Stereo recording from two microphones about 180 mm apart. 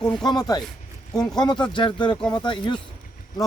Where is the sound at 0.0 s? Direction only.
25° left (ahead or behind).